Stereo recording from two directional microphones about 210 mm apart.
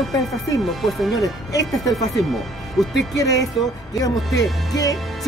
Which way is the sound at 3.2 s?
15° left (ahead or behind).